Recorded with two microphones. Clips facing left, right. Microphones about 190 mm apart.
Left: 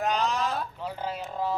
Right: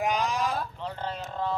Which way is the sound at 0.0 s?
10° right (ahead or behind).